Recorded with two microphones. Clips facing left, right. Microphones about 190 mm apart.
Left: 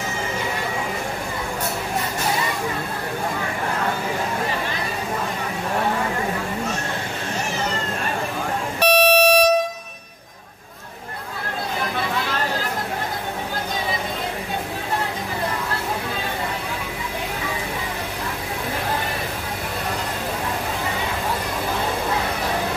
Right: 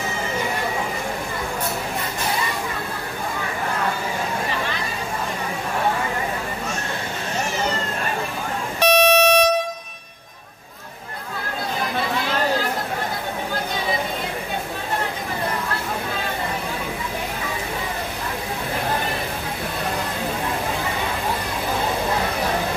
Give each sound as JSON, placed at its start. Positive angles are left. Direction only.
{"t": 8.7, "sound": "vehicle", "side_deg": 10}